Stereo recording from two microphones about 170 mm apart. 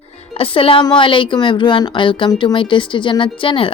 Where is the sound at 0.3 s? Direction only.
30° left (ahead or behind).